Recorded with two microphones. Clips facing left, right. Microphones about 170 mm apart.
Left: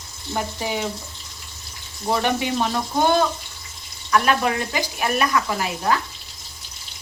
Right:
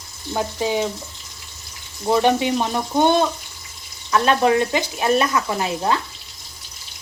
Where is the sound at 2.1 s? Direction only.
20° right (ahead or behind).